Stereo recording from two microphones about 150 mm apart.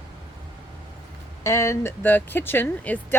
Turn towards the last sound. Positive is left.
turn(degrees=10)  # may be behind; listen again after turning